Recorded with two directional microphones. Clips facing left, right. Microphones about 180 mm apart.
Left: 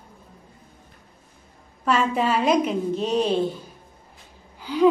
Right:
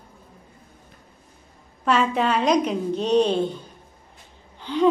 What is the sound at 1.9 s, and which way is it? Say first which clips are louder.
A woman's voice: right 1 dB; centre (ahead or behind).